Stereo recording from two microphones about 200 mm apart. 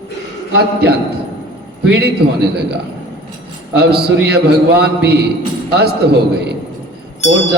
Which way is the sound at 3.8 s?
55° right (ahead or behind).